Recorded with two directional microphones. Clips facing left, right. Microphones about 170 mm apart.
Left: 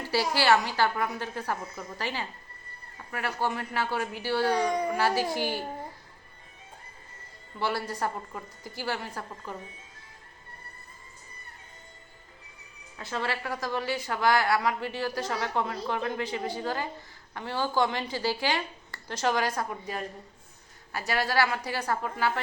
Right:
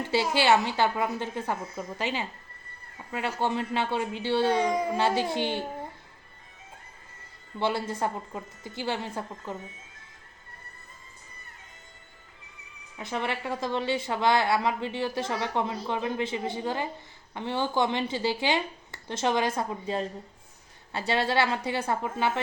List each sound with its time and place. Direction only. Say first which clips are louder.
0.0 s a sound: right 2 dB; 20° right (ahead or behind)
0.3 s a woman's voice: right 1 dB; 20° right (ahead or behind)
7.6 s a woman's voice: right 2 dB; 20° right (ahead or behind)
13.0 s a woman's voice: right 1 dB; 20° right (ahead or behind)